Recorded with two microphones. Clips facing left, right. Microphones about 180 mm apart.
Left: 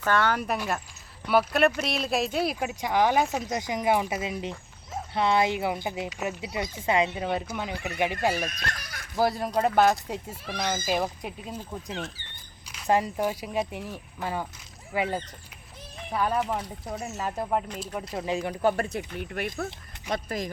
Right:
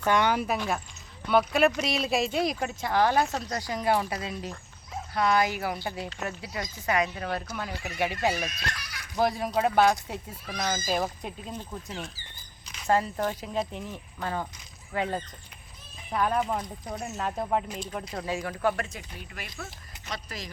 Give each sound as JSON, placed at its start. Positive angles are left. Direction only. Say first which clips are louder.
{"t": 0.0, "sound": "speech", "louder": "right 1 dB", "side_deg": -15}
{"t": 0.4, "sound": "speech", "louder": "even", "side_deg": 0}
{"t": 6.7, "sound": "speech", "louder": "left 2 dB", "side_deg": 25}
{"t": 8.4, "sound": "speech", "louder": "left 1 dB", "side_deg": 50}
{"t": 9.1, "sound": "speech", "louder": "left 1 dB", "side_deg": 0}
{"t": 18.4, "sound": "speech", "louder": "left 3 dB", "side_deg": 20}
{"t": 18.9, "sound": "speech", "louder": "left 10 dB", "side_deg": 55}